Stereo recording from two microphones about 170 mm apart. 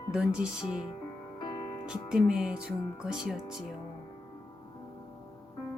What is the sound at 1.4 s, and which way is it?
Music, 25° left (ahead or behind).